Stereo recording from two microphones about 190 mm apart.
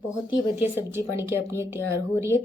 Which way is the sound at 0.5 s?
10° right (ahead or behind).